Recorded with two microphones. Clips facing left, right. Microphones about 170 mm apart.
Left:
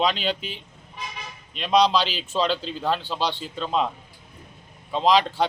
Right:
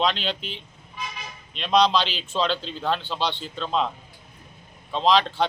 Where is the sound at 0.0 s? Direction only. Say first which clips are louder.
Left 1 dB; 5° left (ahead or behind).